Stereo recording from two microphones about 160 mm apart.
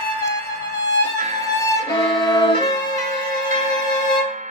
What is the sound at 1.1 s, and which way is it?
Violin, 45° right (ahead or behind).